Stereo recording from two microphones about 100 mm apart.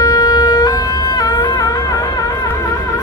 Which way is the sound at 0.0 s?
40° left (ahead or behind).